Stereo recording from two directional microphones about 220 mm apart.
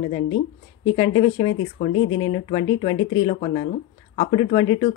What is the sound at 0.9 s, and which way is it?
Speech, 25° left (ahead or behind).